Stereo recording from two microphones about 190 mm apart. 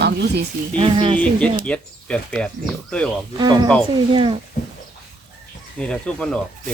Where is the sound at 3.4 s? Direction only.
20° right (ahead or behind).